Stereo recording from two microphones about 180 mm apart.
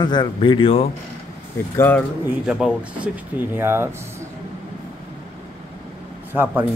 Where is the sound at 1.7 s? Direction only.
15° left (ahead or behind).